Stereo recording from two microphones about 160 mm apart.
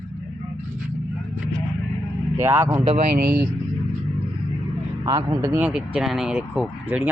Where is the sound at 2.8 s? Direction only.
40° right (ahead or behind).